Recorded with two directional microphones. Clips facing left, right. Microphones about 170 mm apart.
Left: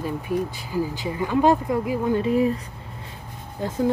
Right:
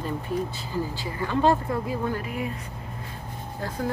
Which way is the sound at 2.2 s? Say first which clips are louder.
Left 11 dB; 30° left (ahead or behind).